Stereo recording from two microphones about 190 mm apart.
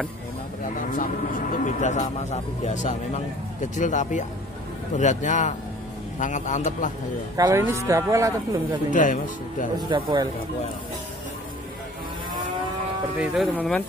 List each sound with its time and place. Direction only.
0.9 s speech: 45° left (ahead or behind)
7.3 s speech: 20° right (ahead or behind)
8.9 s speech: 45° left (ahead or behind)
9.8 s speech: 20° right (ahead or behind)
13.2 s speech: centre (ahead or behind)